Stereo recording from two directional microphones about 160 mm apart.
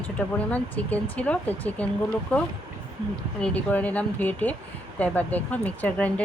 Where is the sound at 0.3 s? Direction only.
10° left (ahead or behind).